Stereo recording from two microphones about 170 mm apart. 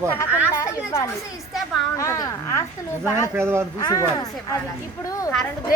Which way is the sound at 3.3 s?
15° right (ahead or behind).